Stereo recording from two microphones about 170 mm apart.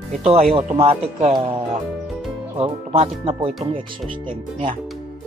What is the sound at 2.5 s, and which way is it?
Speech, 35° right (ahead or behind).